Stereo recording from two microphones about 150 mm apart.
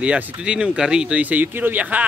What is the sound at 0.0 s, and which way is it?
Speech, 5° right (ahead or behind).